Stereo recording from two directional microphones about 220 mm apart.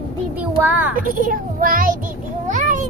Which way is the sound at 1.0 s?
40° right (ahead or behind).